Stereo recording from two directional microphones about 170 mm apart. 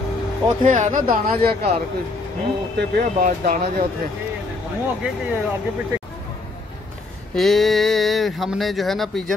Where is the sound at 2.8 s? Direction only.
80° right.